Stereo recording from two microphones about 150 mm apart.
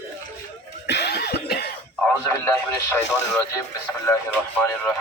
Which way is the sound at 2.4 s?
15° left (ahead or behind).